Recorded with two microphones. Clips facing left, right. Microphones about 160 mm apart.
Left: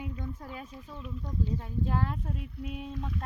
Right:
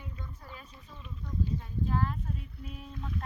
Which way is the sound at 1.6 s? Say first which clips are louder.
Even; 75° left (ahead or behind).